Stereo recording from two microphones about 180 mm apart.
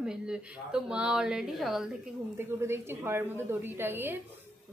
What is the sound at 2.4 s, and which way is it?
A woman's voice, 15° right (ahead or behind).